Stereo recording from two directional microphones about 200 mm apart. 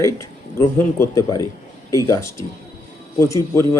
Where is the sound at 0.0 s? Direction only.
15° left (ahead or behind).